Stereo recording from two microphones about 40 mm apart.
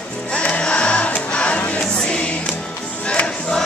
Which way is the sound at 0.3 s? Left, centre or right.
Left.